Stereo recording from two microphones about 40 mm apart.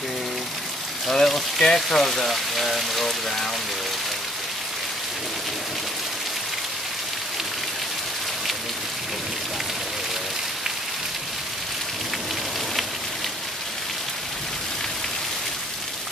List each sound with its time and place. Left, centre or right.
1.0 s speech: centre